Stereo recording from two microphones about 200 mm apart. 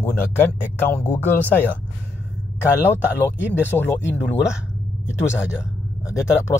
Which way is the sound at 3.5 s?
10° left (ahead or behind).